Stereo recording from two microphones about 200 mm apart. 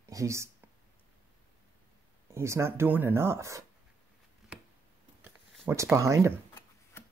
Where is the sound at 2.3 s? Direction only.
15° right (ahead or behind).